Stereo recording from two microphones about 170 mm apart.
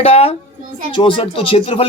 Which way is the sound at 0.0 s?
35° left (ahead or behind).